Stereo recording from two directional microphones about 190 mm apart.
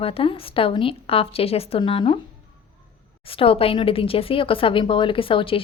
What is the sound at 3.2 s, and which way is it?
A woman's voice, 30° left (ahead or behind).